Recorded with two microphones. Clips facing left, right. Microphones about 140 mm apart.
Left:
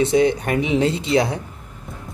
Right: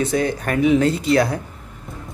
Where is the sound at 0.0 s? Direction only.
20° left (ahead or behind).